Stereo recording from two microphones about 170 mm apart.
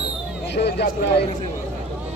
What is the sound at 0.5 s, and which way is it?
Speech, 80° left.